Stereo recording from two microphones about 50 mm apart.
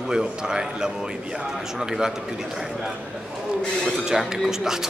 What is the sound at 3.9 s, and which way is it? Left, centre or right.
Speech, centre.